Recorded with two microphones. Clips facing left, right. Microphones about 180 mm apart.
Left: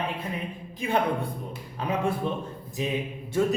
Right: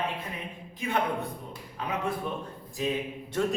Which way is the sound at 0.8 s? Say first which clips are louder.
Left 3 dB; 30° left (ahead or behind).